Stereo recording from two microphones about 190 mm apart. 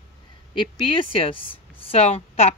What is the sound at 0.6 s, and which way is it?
A woman's voice, 25° left (ahead or behind).